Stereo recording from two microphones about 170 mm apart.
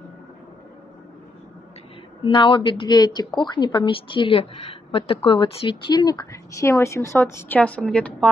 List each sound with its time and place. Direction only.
2.2 s a woman's voice: 30° left (ahead or behind); by 8.3 s 5° left (ahead or behind)